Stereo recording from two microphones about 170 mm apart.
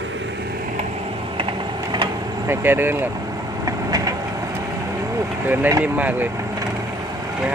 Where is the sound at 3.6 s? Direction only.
20° right (ahead or behind).